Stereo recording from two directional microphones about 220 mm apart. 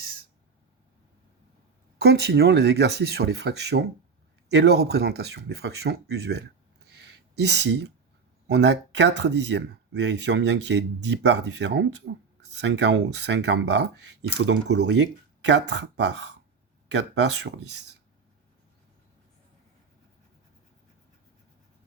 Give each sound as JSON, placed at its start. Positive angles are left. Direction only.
{"t": 2.0, "sound": "speech", "side_deg": -45}